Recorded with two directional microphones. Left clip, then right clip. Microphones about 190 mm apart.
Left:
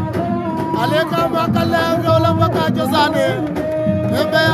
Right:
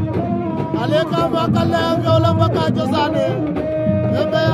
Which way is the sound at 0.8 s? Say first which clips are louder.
Even; 10° left (ahead or behind).